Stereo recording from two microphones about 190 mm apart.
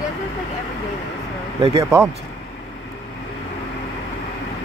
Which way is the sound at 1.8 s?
15° right (ahead or behind).